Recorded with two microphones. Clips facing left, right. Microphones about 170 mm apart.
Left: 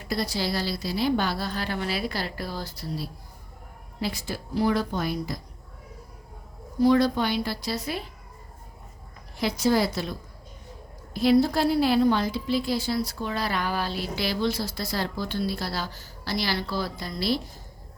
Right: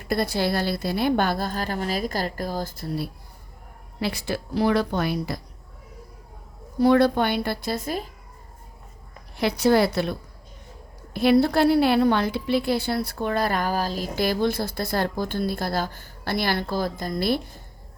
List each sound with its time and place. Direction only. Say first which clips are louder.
0.1 s a woman's voice: right 4 dB; 55° right (ahead or behind)
4.0 s a woman's voice: right 4 dB; 70° right (ahead or behind)
6.7 s a woman's voice: right 2 dB; 60° right (ahead or behind); by 8.1 s 45° right (ahead or behind)
9.4 s a woman's voice: right 4 dB; 60° right (ahead or behind)